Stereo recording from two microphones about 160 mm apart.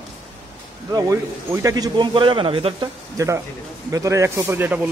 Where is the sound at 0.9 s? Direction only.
20° right (ahead or behind).